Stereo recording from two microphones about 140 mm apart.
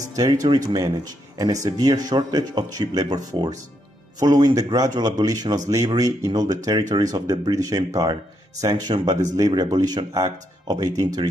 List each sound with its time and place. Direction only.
0.1 s speech: 25° right (ahead or behind)